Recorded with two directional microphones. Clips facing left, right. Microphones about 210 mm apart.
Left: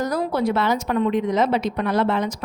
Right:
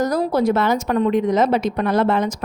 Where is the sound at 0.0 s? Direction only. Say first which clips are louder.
Right 4 dB; 40° right (ahead or behind).